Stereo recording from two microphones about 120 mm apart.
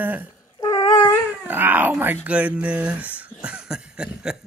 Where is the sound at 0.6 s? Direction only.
30° left (ahead or behind).